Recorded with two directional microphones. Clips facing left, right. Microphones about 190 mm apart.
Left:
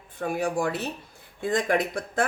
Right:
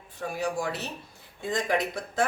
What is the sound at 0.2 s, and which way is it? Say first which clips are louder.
Speech: left 4 dB; 55° left (ahead or behind).